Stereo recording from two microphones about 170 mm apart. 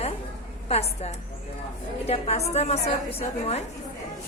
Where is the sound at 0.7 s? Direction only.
40° left (ahead or behind).